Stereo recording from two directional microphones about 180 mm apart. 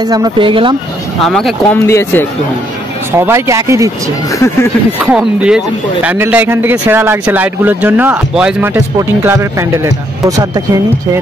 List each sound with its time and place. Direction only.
0.0 s speech: 20° right (ahead or behind)
1.2 s speech: centre (ahead or behind)
1.9 s speech: 15° left (ahead or behind)
3.1 s speech: 15° right (ahead or behind)
4.3 s speech: 15° left (ahead or behind)
5.0 s speech: 5° right (ahead or behind)